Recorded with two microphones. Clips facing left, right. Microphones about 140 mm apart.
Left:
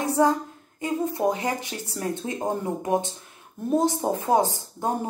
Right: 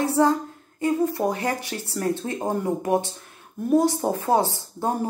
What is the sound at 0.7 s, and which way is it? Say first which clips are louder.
A woman's voice: right 4 dB; 20° left (ahead or behind).